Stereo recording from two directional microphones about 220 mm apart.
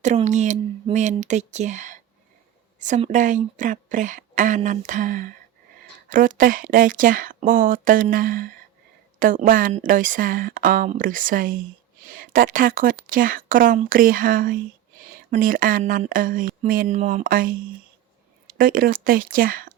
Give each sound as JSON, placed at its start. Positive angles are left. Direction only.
{"t": 0.0, "sound": "speech", "side_deg": -30}